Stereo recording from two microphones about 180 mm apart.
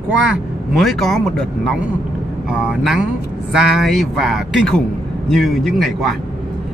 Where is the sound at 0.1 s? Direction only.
5° right (ahead or behind).